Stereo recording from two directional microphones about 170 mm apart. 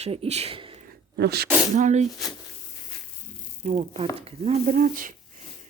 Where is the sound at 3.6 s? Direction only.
40° right (ahead or behind).